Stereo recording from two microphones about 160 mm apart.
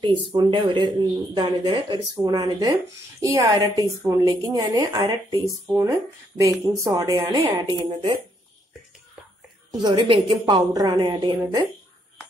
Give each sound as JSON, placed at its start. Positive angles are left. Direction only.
{"t": 0.0, "sound": "a woman's voice", "side_deg": -30}
{"t": 9.7, "sound": "a woman's voice", "side_deg": -25}